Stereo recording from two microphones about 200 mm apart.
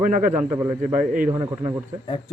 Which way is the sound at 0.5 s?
10° right (ahead or behind).